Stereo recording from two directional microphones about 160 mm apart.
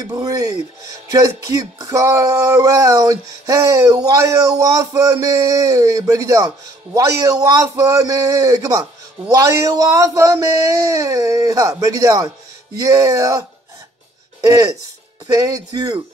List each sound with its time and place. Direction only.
0.0 s speech: 25° right (ahead or behind)